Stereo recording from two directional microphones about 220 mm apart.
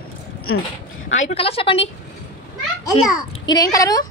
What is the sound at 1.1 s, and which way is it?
Speech, 35° left (ahead or behind).